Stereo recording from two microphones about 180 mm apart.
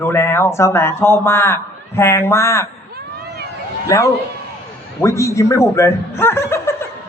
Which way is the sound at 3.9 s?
15° left (ahead or behind).